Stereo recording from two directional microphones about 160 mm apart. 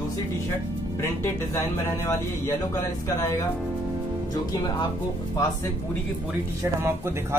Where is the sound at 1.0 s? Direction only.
15° left (ahead or behind).